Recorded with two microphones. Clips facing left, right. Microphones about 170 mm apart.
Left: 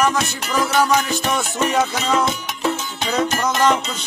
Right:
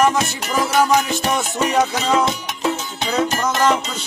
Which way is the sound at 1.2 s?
Centre (ahead or behind).